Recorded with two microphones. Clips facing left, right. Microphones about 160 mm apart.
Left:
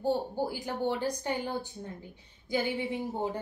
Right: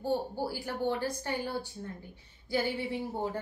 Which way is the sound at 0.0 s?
15° left (ahead or behind).